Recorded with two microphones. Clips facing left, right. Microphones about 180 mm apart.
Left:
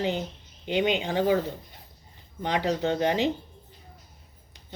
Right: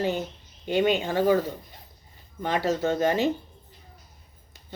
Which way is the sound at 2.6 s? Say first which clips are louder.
Right 2 dB; 15° left (ahead or behind).